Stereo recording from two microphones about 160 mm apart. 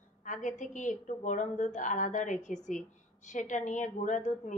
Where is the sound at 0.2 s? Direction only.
50° left (ahead or behind).